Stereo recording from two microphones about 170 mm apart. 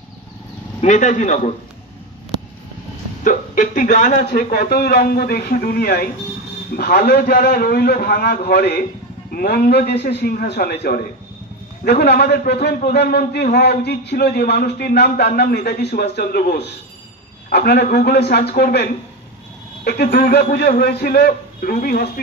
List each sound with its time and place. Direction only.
0.7 s speech: 45° left (ahead or behind)
3.3 s speech: 50° left (ahead or behind)
4.3 s a man's voice: 60° left (ahead or behind)